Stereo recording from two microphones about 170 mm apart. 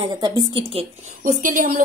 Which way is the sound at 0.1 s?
25° right (ahead or behind).